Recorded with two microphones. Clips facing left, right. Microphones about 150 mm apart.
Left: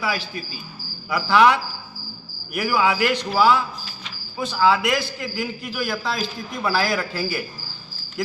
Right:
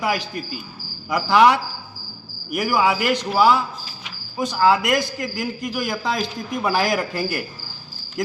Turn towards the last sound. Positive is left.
turn(degrees=-15)  # may be behind; listen again after turning